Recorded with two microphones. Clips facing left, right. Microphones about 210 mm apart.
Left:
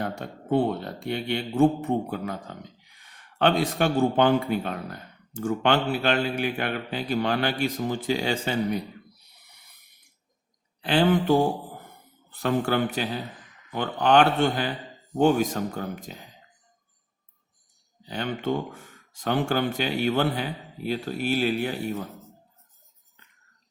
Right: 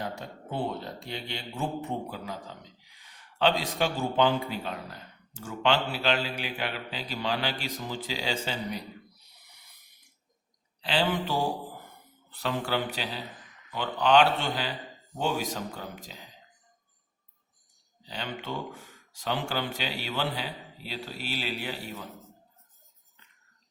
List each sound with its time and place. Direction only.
0.0 s speech: 55° left (ahead or behind)
10.8 s a man's voice: 50° left (ahead or behind)
18.0 s a man's voice: 50° left (ahead or behind)